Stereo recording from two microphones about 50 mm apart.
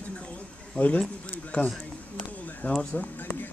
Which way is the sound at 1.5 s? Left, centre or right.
Left.